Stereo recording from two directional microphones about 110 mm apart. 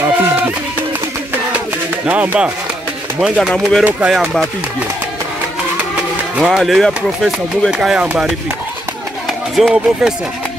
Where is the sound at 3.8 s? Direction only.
10° right (ahead or behind).